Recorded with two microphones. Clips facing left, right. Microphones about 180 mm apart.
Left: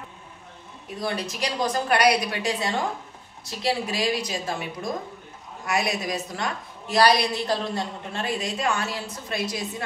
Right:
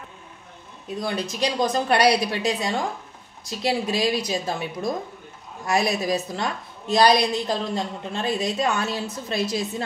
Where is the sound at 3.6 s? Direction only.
20° right (ahead or behind).